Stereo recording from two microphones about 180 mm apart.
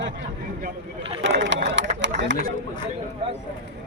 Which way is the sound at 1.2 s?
90° right.